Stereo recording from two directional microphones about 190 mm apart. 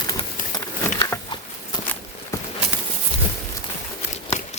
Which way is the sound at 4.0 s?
35° left (ahead or behind).